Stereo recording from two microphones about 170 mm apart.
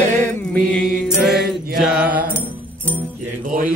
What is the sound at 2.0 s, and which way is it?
Mantra, 10° right (ahead or behind).